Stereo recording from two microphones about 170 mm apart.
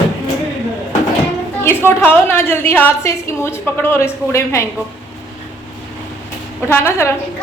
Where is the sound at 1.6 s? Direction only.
15° left (ahead or behind).